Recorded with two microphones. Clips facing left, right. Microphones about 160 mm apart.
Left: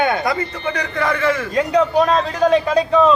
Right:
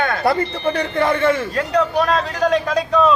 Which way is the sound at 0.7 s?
30° right (ahead or behind).